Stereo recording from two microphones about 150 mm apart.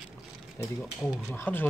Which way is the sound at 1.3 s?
15° left (ahead or behind).